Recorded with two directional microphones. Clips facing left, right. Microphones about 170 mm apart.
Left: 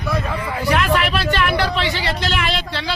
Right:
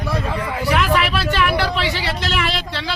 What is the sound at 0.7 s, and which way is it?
Speech, centre (ahead or behind).